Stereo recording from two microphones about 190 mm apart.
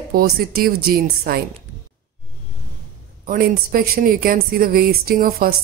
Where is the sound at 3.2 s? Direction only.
50° right (ahead or behind).